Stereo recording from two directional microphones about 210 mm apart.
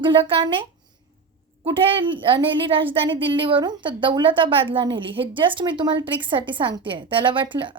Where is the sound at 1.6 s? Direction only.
25° right (ahead or behind).